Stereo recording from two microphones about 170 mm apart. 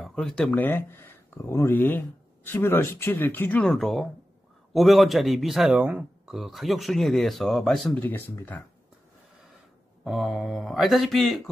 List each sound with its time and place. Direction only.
0.0 s a man's voice: centre (ahead or behind)
10.0 s a man's voice: centre (ahead or behind)